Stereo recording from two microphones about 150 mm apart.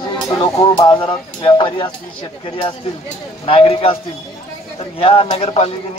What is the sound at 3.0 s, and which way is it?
Speech, 40° left (ahead or behind).